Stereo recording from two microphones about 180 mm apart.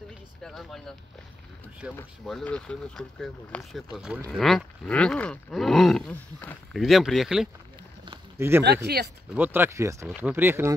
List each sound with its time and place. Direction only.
0.4 s speech: centre (ahead or behind)
1.8 s roaring cats: 5° right (ahead or behind)
8.4 s speech: 15° right (ahead or behind)
8.8 s speech: 65° right (ahead or behind)
9.3 s speech: 10° right (ahead or behind)